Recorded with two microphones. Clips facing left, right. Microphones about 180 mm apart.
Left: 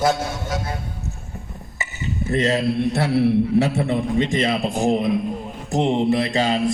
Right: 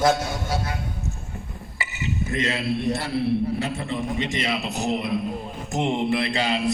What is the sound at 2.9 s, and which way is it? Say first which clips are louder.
Speech: left 5 dB; 70° left (ahead or behind).